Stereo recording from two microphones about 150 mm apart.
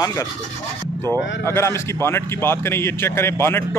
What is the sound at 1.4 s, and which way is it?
A man's voice, 15° left (ahead or behind).